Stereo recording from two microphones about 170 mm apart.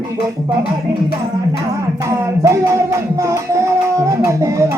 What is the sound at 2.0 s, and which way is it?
Music, 20° right (ahead or behind).